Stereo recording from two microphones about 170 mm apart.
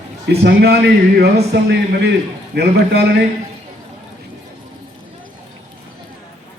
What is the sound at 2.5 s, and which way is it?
Speech, 70° right (ahead or behind).